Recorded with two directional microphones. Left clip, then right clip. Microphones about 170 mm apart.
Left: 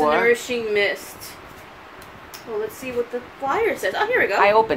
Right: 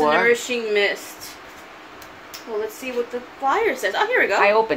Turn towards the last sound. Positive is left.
turn(degrees=15)  # may be behind; listen again after turning